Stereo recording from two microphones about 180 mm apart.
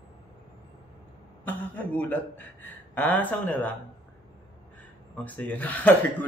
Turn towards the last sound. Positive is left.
turn(degrees=10)  # may be behind; listen again after turning